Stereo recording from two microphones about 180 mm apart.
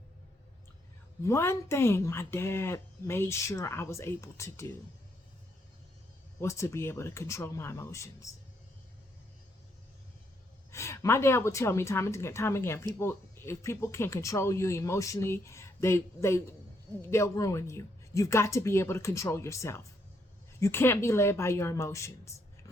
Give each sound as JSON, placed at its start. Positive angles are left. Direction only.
{"t": 1.2, "sound": "speech", "side_deg": 15}
{"t": 6.4, "sound": "speech", "side_deg": 15}
{"t": 10.7, "sound": "speech", "side_deg": 15}